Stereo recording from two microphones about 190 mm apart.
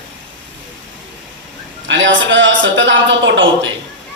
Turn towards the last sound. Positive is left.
turn(degrees=-80)